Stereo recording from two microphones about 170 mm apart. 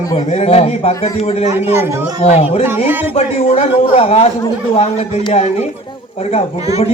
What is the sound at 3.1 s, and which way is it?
Speech, 35° left (ahead or behind).